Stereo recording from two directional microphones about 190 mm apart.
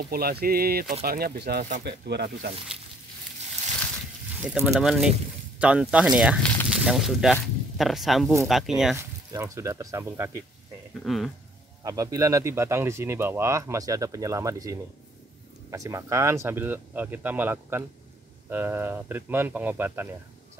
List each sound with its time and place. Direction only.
0.0 s speech: 55° right (ahead or behind)
4.4 s speech: 5° right (ahead or behind)
8.9 s speech: 15° right (ahead or behind)
11.1 s speech: centre (ahead or behind)
11.8 s speech: 20° right (ahead or behind)